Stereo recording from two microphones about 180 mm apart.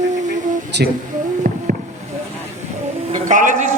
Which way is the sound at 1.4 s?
55° right (ahead or behind).